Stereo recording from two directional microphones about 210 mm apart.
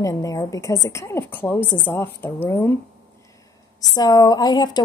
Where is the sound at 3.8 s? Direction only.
20° left (ahead or behind).